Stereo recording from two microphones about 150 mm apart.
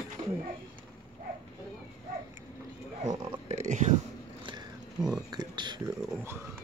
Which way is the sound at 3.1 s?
25° right (ahead or behind).